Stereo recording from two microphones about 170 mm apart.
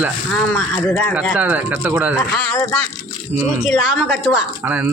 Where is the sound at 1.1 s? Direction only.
10° right (ahead or behind).